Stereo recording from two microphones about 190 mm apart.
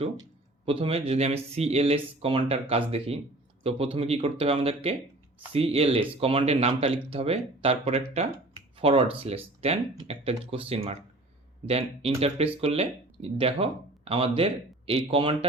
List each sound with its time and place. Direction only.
0.2 s speech: 30° right (ahead or behind)